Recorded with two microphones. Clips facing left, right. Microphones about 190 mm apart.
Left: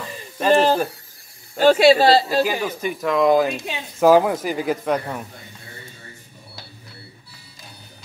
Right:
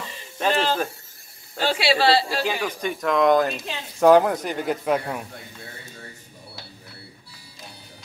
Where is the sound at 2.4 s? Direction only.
5° left (ahead or behind).